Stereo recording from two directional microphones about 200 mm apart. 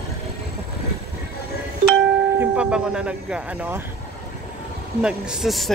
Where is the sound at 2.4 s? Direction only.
5° right (ahead or behind).